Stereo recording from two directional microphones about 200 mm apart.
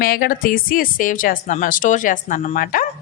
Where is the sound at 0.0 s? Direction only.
45° left (ahead or behind).